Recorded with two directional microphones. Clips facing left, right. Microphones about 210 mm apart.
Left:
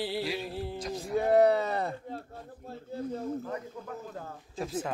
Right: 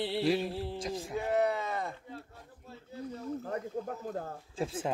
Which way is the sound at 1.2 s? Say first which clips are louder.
Left 8 dB; 35° left (ahead or behind).